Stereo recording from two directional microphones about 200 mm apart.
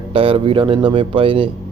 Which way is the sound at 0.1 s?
25° right (ahead or behind).